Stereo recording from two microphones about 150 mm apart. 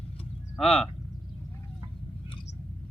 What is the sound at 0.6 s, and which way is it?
Speech, 5° left (ahead or behind).